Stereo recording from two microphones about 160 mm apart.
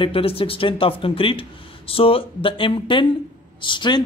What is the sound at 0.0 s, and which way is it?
Speech, 35° left (ahead or behind).